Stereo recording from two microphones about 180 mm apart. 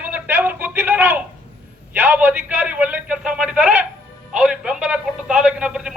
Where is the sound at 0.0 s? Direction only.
10° right (ahead or behind).